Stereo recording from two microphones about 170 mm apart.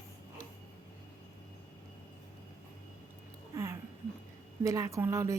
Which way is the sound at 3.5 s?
20° right (ahead or behind).